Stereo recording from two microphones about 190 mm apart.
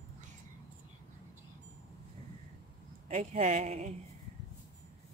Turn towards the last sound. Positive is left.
turn(degrees=-35)  # may be behind; listen again after turning